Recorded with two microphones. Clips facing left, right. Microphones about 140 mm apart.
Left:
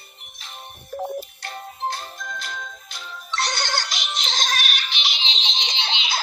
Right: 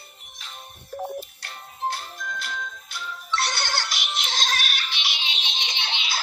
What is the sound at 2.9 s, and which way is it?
Music, 20° left (ahead or behind).